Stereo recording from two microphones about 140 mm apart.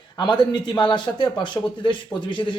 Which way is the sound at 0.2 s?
35° left (ahead or behind).